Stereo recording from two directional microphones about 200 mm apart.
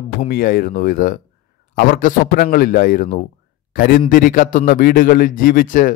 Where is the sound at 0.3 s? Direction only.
45° left (ahead or behind).